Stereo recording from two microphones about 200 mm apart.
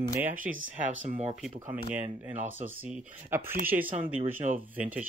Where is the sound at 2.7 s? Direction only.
5° right (ahead or behind).